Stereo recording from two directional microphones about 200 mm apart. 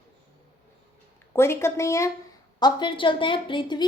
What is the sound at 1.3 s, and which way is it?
A woman's voice, 15° left (ahead or behind).